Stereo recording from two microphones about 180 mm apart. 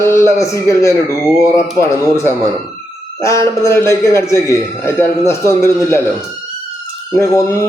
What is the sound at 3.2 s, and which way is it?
A man's voice, 15° left (ahead or behind).